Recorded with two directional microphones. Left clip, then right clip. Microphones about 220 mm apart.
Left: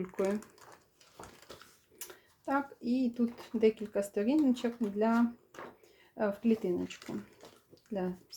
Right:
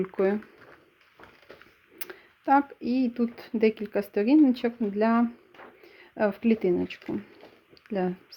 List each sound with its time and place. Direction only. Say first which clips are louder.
0.0 s speech: right 8 dB; 30° right (ahead or behind)
2.0 s a sound: right 7 dB; 35° right (ahead or behind)
2.9 s speech: right 5 dB; 35° right (ahead or behind)
7.9 s speech: right 8 dB; 35° right (ahead or behind)